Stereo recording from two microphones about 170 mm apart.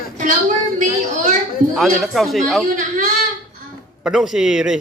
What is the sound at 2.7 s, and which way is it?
Speech, 50° right (ahead or behind).